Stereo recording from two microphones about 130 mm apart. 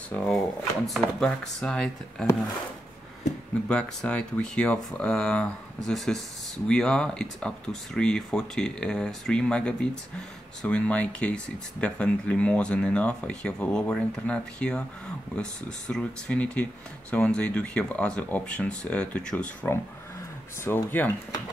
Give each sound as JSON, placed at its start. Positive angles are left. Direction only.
{"t": 0.1, "sound": "speech", "side_deg": 5}
{"t": 3.6, "sound": "speech", "side_deg": 10}
{"t": 15.9, "sound": "speech", "side_deg": 10}